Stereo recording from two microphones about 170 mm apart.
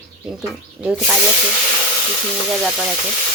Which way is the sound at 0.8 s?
5° right (ahead or behind).